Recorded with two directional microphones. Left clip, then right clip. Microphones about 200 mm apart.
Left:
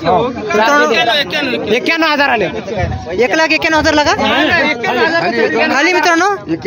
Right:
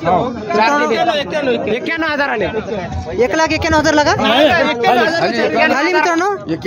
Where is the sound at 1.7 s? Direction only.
35° left (ahead or behind).